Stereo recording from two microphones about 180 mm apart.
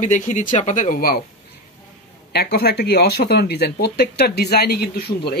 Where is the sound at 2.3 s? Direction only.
60° left (ahead or behind).